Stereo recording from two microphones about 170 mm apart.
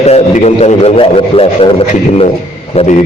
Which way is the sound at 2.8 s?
40° left (ahead or behind).